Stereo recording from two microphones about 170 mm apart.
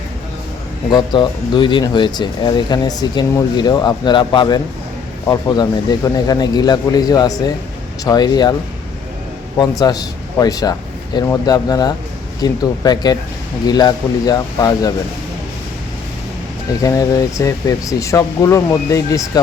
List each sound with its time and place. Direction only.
0.9 s speech: 25° left (ahead or behind)
9.6 s a man's voice: 20° left (ahead or behind)
16.8 s speech: 20° left (ahead or behind)